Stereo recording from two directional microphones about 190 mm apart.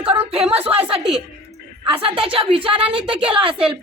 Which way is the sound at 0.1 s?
30° right (ahead or behind).